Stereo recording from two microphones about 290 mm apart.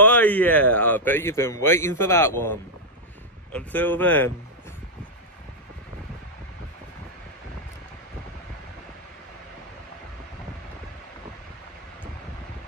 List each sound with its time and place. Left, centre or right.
0.0 s a man's voice: centre
3.5 s a man's voice: centre